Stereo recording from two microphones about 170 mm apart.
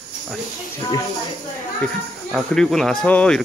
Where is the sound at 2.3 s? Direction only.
Centre (ahead or behind).